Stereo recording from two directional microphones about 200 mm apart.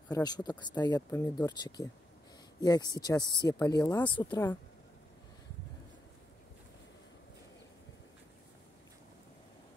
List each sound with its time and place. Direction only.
0.1 s speech: 20° left (ahead or behind)
3.8 s speech: 5° left (ahead or behind)
4.1 s speech: 20° left (ahead or behind)